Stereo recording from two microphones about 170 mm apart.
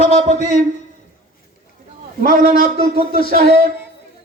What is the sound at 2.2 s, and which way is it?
Speech, 55° right (ahead or behind).